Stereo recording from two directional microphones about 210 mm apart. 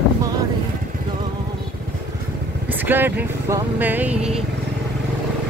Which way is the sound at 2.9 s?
10° right (ahead or behind).